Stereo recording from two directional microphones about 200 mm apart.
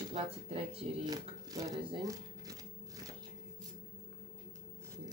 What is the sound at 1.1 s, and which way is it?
Speech, 20° right (ahead or behind).